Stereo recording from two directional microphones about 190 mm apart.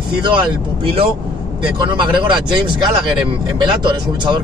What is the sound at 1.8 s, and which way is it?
Speech, 25° right (ahead or behind).